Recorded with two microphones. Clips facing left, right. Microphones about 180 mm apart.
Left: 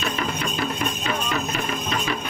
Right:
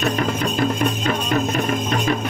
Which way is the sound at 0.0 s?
45° right (ahead or behind).